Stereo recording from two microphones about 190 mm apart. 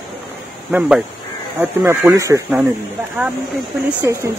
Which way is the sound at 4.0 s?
15° right (ahead or behind).